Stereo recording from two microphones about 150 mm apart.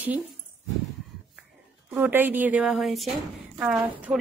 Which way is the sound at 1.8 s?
15° right (ahead or behind).